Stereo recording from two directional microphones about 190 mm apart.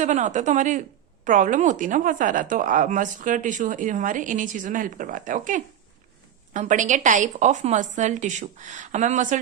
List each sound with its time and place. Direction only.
0.0 s a woman's voice: 40° right (ahead or behind)